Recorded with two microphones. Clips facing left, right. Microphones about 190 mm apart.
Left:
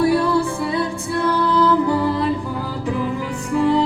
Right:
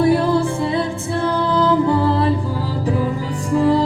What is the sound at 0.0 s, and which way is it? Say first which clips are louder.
Music: right 2 dB; 25° right (ahead or behind).